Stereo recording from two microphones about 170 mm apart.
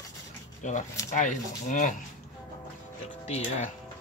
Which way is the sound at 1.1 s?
45° left (ahead or behind).